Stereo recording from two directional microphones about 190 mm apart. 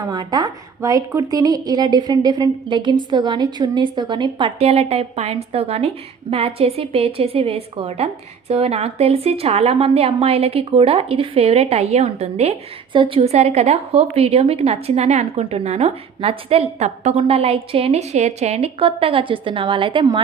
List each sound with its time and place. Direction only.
0.0 s a woman's voice: 20° right (ahead or behind)